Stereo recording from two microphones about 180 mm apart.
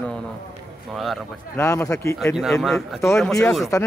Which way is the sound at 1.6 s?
15° left (ahead or behind).